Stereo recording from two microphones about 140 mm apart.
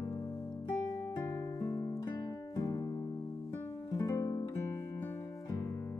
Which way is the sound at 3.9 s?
25° left (ahead or behind).